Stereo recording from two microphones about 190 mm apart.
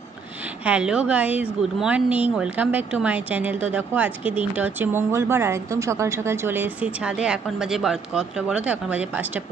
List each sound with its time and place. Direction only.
0.7 s a woman's voice: 5° right (ahead or behind)